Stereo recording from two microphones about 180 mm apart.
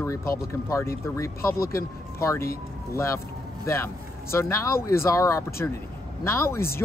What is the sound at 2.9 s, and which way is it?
Speech, 15° left (ahead or behind).